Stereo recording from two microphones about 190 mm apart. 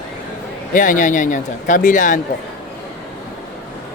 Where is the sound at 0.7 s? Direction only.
45° left (ahead or behind).